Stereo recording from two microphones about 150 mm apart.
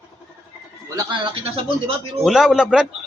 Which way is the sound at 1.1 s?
35° right (ahead or behind).